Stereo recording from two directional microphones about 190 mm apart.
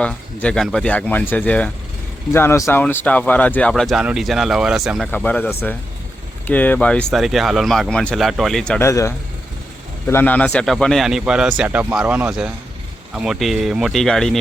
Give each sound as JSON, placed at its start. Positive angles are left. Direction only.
{"t": 0.0, "sound": "speech", "side_deg": 5}
{"t": 5.1, "sound": "speech", "side_deg": 10}
{"t": 8.9, "sound": "speech", "side_deg": 15}